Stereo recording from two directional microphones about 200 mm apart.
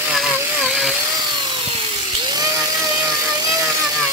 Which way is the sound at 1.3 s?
25° right (ahead or behind).